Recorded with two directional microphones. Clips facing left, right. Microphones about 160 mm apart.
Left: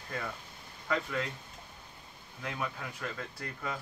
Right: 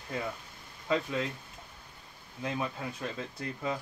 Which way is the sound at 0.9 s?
20° right (ahead or behind).